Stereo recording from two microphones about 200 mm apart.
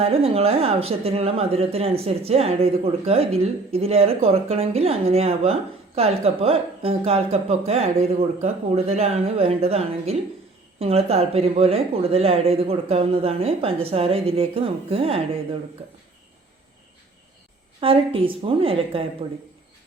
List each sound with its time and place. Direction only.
0.0 s a woman's voice: 30° right (ahead or behind)
17.7 s speech: 25° right (ahead or behind)